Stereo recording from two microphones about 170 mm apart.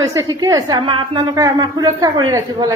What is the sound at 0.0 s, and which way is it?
A woman's voice, 20° right (ahead or behind).